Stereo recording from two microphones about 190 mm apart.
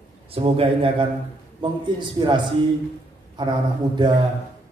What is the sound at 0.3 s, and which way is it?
A man's voice, 30° right (ahead or behind).